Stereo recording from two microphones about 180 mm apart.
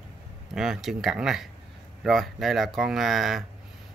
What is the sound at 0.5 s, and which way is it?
Speech, centre (ahead or behind).